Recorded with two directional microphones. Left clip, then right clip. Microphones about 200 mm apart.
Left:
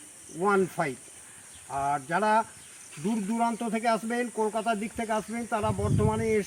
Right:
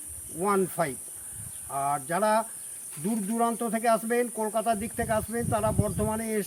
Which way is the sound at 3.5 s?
5° right (ahead or behind).